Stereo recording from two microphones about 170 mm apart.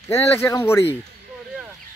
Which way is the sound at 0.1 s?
15° left (ahead or behind).